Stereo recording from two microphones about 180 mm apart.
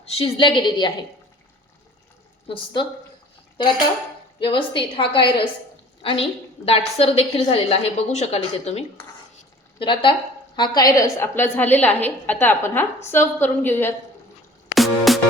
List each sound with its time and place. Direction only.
0.0 s a woman's voice: 35° left (ahead or behind)
2.5 s a woman's voice: 30° left (ahead or behind)
4.4 s a woman's voice: 30° left (ahead or behind); by 13.9 s 10° left (ahead or behind)
14.8 s music: centre (ahead or behind)